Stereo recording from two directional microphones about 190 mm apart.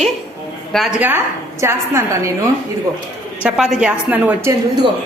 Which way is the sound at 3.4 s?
5° right (ahead or behind).